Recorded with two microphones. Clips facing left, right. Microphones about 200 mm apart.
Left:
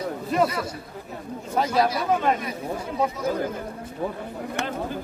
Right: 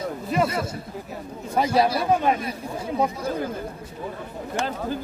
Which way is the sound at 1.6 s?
15° right (ahead or behind).